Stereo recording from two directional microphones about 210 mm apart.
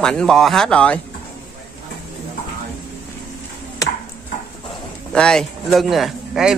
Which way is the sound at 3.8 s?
15° left (ahead or behind).